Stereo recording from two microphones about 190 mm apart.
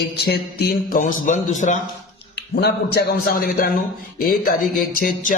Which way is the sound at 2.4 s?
60° left (ahead or behind).